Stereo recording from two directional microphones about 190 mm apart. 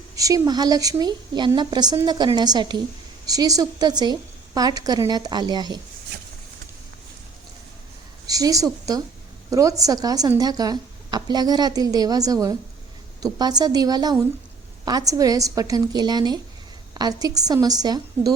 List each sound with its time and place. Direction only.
0.2 s a woman's voice: 20° right (ahead or behind)
8.3 s a woman's voice: 20° right (ahead or behind)